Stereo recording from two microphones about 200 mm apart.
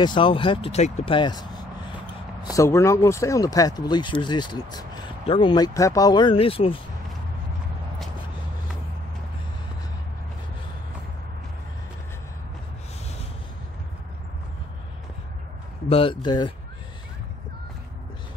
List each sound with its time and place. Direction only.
0.0 s speech: 25° left (ahead or behind)
15.9 s speech: 25° left (ahead or behind)